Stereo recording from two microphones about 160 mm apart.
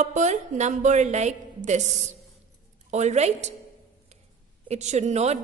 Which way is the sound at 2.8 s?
45° right (ahead or behind).